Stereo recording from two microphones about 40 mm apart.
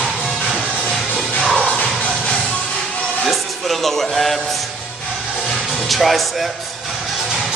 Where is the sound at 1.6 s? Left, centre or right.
Left.